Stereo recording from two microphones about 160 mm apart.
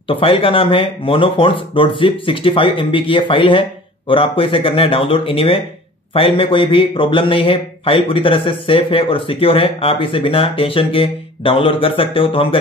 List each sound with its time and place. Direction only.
0.1 s speech: 35° left (ahead or behind)